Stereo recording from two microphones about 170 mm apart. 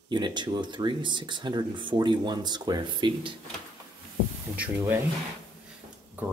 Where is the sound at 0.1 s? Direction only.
25° right (ahead or behind).